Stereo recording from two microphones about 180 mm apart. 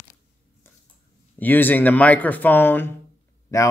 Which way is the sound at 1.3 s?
10° left (ahead or behind).